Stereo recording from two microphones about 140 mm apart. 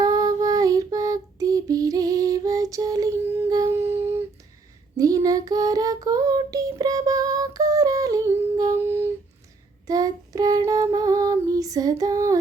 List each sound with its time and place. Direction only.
0.0 s child singing: 25° right (ahead or behind)
3.2 s a sound: 15° right (ahead or behind)
3.5 s humming: 20° right (ahead or behind)
4.9 s child singing: 25° right (ahead or behind)
10.7 s female singing: 25° right (ahead or behind)